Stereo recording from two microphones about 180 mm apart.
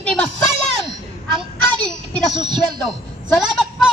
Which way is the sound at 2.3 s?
25° right (ahead or behind).